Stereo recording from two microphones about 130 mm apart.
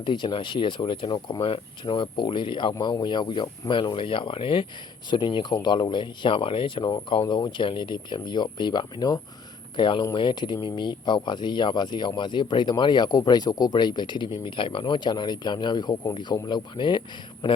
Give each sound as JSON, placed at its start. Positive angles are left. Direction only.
{"t": 0.0, "sound": "speech", "side_deg": 35}